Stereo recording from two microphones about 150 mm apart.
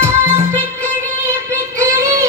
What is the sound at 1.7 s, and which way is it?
Child singing, 20° right (ahead or behind).